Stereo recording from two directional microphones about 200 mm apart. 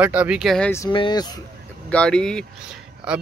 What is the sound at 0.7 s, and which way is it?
Speech, 15° left (ahead or behind).